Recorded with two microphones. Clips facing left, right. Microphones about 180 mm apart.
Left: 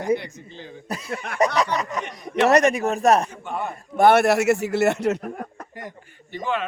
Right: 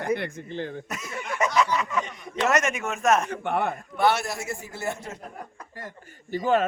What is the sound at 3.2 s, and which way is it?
Speech, 65° right (ahead or behind).